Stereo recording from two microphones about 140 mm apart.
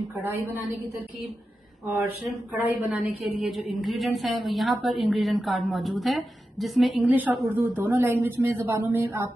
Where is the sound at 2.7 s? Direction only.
10° right (ahead or behind).